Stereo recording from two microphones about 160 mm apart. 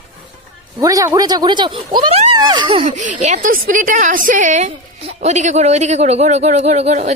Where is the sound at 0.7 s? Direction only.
20° right (ahead or behind).